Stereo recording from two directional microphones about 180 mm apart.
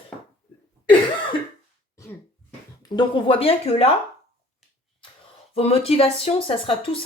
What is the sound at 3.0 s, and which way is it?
Speech, 30° left (ahead or behind).